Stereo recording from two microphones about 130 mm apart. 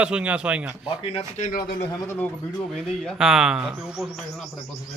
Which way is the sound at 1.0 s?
45° left (ahead or behind).